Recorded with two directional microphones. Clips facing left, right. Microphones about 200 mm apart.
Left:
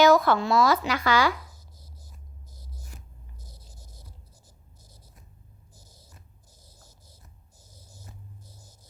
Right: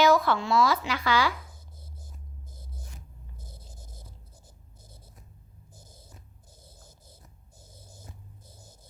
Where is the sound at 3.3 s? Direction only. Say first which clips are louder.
Right 2 dB; 55° right (ahead or behind).